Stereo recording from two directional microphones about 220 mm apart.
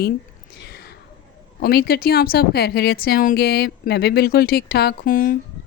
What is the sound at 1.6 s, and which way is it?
A woman's voice, 45° left (ahead or behind).